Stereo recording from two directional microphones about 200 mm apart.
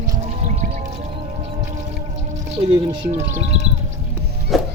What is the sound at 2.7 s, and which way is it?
Speech, 25° right (ahead or behind).